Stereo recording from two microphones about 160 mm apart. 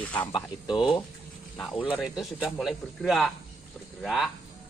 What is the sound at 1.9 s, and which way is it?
Speech, 5° right (ahead or behind).